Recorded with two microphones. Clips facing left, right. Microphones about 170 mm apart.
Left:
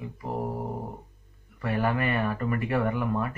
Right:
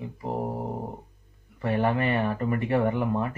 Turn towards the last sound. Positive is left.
turn(degrees=-25)  # may be behind; listen again after turning